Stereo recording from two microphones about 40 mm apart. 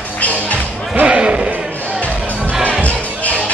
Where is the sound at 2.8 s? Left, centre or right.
Left.